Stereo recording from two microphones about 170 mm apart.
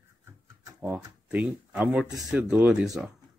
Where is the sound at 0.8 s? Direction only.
10° right (ahead or behind).